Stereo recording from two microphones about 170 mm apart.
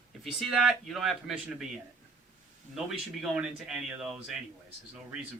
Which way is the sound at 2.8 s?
5° right (ahead or behind).